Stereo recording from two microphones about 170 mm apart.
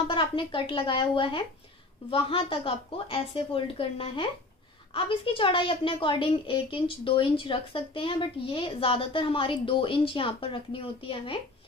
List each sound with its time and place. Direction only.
0.1 s a woman's voice: 30° left (ahead or behind)